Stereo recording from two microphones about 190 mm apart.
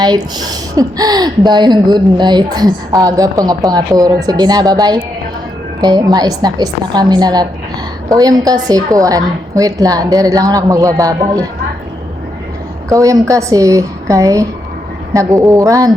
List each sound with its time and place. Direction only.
0.0 s a woman's voice: 20° right (ahead or behind)
12.9 s a woman's voice: 15° right (ahead or behind)